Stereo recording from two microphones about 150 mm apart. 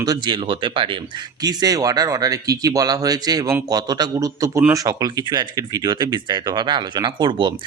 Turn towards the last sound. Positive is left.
turn(degrees=-30)  # may be behind; listen again after turning